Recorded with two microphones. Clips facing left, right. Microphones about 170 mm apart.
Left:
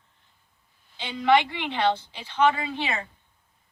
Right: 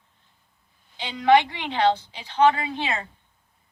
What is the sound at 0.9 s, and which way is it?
Speech, 15° right (ahead or behind).